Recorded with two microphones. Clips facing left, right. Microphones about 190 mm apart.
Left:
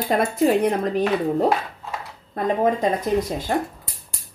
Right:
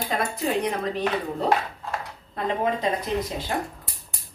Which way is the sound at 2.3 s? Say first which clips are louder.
Left 5 dB; 45° left (ahead or behind).